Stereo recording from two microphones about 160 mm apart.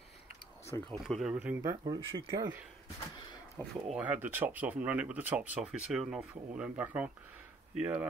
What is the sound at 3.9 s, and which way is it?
Speech, 10° right (ahead or behind).